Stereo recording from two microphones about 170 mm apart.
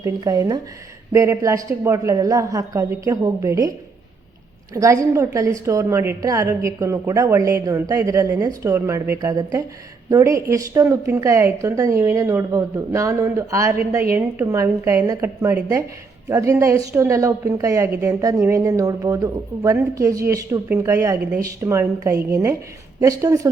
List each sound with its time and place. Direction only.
0.0 s a woman's voice: 20° right (ahead or behind)